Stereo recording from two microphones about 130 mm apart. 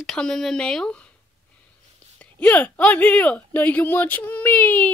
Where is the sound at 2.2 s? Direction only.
10° left (ahead or behind).